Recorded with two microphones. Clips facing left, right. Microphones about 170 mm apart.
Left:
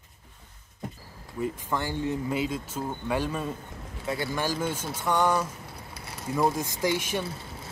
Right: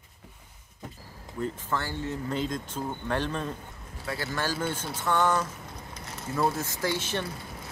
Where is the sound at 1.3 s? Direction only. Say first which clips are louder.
Left 1 dB; 10° left (ahead or behind).